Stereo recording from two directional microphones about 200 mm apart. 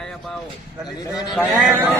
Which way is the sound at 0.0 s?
5° left (ahead or behind).